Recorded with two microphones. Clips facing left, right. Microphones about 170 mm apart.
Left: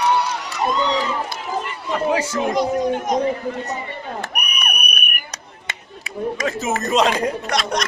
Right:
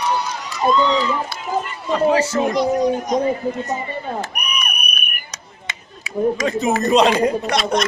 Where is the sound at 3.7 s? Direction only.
60° left (ahead or behind).